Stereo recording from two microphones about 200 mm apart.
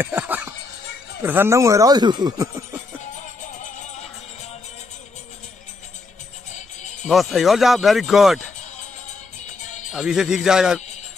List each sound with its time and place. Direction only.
0.0 s a sound: 10° right (ahead or behind)
1.2 s speech: 10° right (ahead or behind)
7.1 s speech: centre (ahead or behind)
9.7 s music: 35° left (ahead or behind)
9.9 s speech: centre (ahead or behind)